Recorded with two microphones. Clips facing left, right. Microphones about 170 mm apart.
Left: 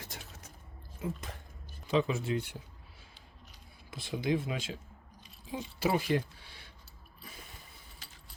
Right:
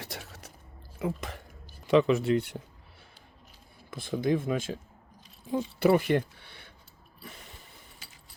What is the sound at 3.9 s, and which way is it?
Speech, 50° right (ahead or behind).